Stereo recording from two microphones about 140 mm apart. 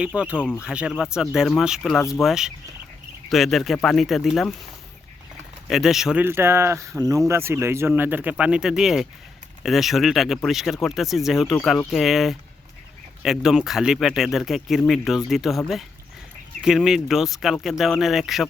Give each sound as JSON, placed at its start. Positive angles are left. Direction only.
{"t": 0.1, "sound": "speech", "side_deg": -10}
{"t": 5.6, "sound": "speech", "side_deg": 0}
{"t": 6.2, "sound": "speech", "side_deg": -15}